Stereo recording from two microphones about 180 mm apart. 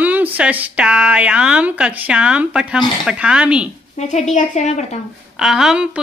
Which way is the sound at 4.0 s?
40° left (ahead or behind).